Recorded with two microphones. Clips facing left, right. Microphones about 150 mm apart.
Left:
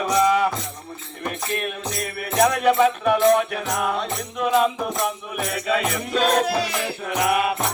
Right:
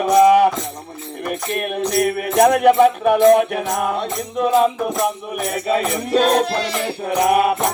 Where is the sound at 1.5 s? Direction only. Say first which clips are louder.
Right 9 dB; 55° right (ahead or behind); by 6.4 s 35° right (ahead or behind).